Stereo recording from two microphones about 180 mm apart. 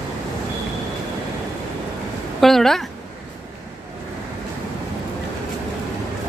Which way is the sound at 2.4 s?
Centre (ahead or behind).